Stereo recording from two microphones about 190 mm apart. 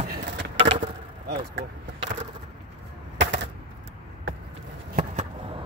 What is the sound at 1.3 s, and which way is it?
Speech, 75° right (ahead or behind).